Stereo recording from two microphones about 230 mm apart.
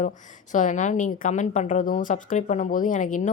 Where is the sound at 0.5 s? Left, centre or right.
Left.